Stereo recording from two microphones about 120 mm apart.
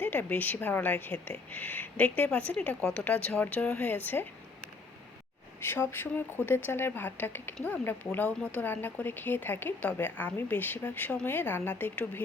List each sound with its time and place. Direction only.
0.0 s speech: 15° left (ahead or behind)
5.5 s speech: 20° left (ahead or behind)